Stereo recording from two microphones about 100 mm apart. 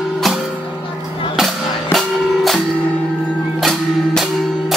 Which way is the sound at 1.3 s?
Centre (ahead or behind).